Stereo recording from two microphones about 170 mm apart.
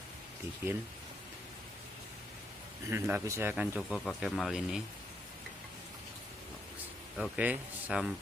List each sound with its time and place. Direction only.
2.9 s speech: 15° right (ahead or behind)
7.2 s speech: 5° right (ahead or behind)